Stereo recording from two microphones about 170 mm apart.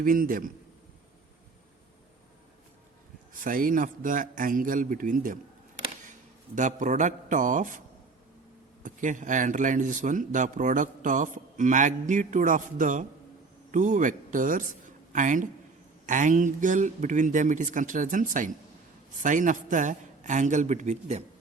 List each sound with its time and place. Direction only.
0.0 s speech: 55° right (ahead or behind)
3.3 s speech: 55° right (ahead or behind)
6.6 s speech: 45° right (ahead or behind)
8.8 s a man's voice: 50° right (ahead or behind)